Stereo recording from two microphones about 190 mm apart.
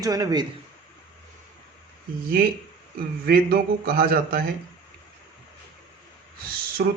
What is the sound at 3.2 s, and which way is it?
A man's voice, 50° right (ahead or behind).